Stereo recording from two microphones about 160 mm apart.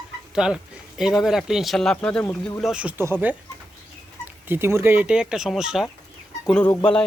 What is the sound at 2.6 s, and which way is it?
Speech, 5° right (ahead or behind).